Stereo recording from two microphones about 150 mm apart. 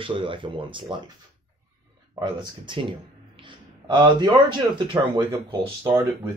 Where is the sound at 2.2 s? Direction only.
35° right (ahead or behind).